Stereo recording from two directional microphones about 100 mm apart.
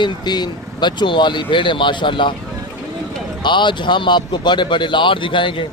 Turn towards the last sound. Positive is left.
turn(degrees=55)  # may be behind; listen again after turning